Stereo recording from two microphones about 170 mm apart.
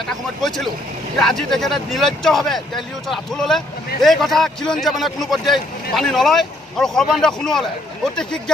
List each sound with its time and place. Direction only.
0.4 s speech: centre (ahead or behind)